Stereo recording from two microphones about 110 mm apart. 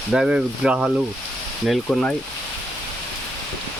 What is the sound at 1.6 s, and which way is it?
Speech, 5° left (ahead or behind).